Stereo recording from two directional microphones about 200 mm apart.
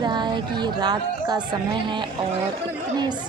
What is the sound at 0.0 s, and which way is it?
A woman's voice, 20° right (ahead or behind).